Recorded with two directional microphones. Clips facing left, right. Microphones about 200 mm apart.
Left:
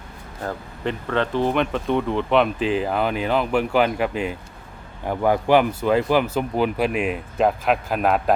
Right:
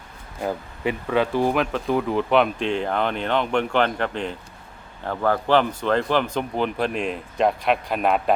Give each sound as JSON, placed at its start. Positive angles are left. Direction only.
{"t": 0.4, "sound": "speech", "side_deg": -10}